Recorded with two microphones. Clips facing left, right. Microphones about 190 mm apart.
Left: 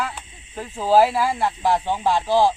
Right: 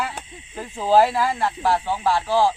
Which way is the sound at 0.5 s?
Centre (ahead or behind).